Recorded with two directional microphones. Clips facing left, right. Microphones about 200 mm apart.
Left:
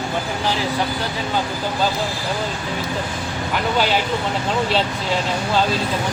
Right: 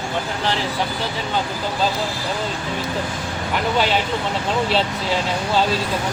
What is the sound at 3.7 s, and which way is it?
Speech, centre (ahead or behind).